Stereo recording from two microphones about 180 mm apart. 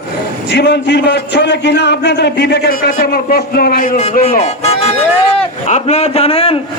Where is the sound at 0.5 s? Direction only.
75° left (ahead or behind); by 6.6 s 30° left (ahead or behind).